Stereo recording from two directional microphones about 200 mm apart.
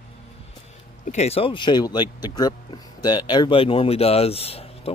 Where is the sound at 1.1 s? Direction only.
30° left (ahead or behind).